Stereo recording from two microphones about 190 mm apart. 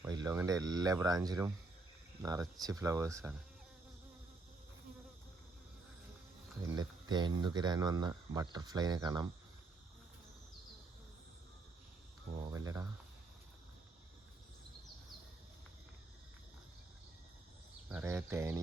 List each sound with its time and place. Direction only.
0.0 s speech: 20° right (ahead or behind)
6.6 s speech: 20° right (ahead or behind)
12.5 s cricket: 15° right (ahead or behind)
17.8 s speech: 10° right (ahead or behind)